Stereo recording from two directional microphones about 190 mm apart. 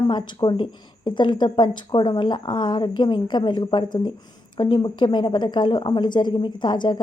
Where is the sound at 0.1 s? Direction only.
25° left (ahead or behind).